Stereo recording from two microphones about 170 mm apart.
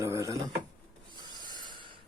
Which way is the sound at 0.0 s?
20° right (ahead or behind).